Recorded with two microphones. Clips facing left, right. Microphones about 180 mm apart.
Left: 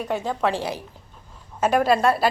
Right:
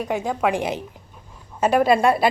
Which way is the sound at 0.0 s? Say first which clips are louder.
Right 2 dB; 10° right (ahead or behind).